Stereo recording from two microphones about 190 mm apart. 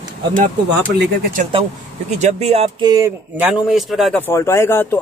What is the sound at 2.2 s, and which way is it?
Speech, 35° right (ahead or behind).